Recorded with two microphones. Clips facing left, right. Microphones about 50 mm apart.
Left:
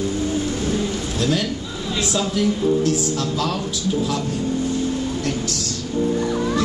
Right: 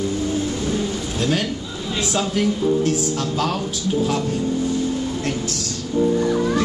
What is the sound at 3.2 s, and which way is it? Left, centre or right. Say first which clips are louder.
Speech: right 1 dB; right.